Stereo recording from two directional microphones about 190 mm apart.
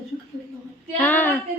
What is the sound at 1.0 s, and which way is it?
Speech, 10° left (ahead or behind).